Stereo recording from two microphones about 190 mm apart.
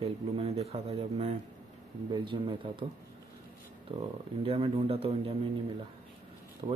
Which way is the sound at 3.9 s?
30° right (ahead or behind).